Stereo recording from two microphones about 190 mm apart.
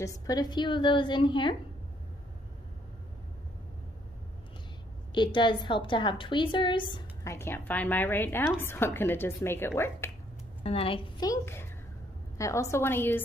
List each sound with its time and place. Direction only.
0.0 s a woman's voice: 20° left (ahead or behind)
5.1 s a woman's voice: 25° left (ahead or behind)
7.3 s a woman's voice: 10° left (ahead or behind)
10.6 s a woman's voice: 30° left (ahead or behind); by 13.2 s 10° left (ahead or behind)